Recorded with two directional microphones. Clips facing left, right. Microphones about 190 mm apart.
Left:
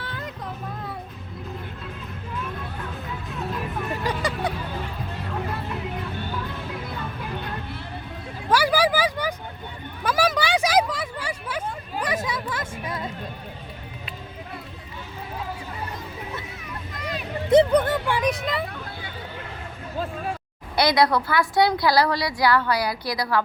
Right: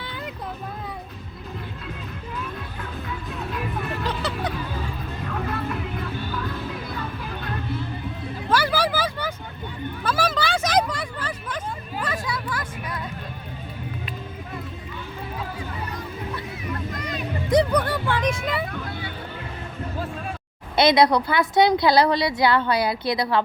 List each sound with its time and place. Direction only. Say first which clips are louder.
0.0 s music: even; centre (ahead or behind)
4.0 s vehicle: left 2 dB; 10° left (ahead or behind)
8.4 s a sound: left 2 dB; 10° left (ahead or behind)
12.0 s a sound: left 2 dB; 20° left (ahead or behind)
17.5 s music: left 3 dB; 25° left (ahead or behind)
18.3 s vehicle: even; 5° right (ahead or behind)
20.7 s a woman's voice: right 3 dB; 20° right (ahead or behind)